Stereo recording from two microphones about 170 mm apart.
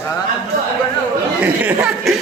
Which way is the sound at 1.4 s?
5° right (ahead or behind).